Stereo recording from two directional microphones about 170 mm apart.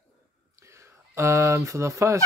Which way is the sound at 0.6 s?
15° right (ahead or behind).